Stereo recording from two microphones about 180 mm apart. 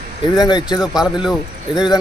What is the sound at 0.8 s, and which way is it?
Speech, centre (ahead or behind).